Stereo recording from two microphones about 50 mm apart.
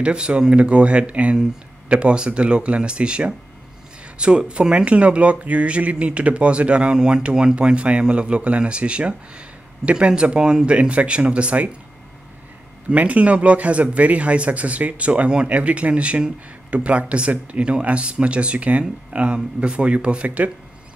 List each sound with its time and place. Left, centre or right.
0.0 s speech: centre
12.9 s speech: right